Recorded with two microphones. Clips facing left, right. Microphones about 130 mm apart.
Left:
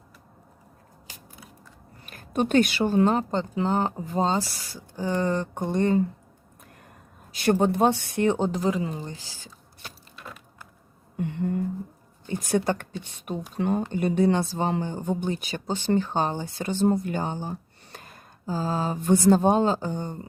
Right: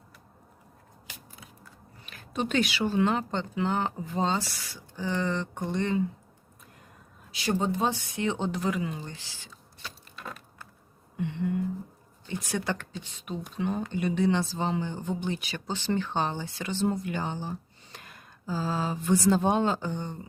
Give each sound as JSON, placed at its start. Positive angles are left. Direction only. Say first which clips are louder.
{"t": 2.0, "sound": "speech", "louder": "left 6 dB", "side_deg": 50}
{"t": 7.3, "sound": "speech", "louder": "left 6 dB", "side_deg": 60}
{"t": 11.2, "sound": "speech", "louder": "left 2 dB", "side_deg": 45}